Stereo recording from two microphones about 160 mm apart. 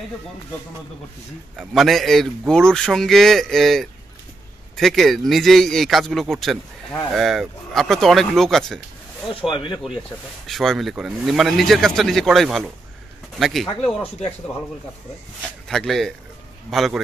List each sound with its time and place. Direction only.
1.6 s a man's voice: centre (ahead or behind)
9.3 s speech: 35° left (ahead or behind)
10.4 s a man's voice: centre (ahead or behind)
13.7 s speech: 35° left (ahead or behind)
15.7 s a man's voice: centre (ahead or behind)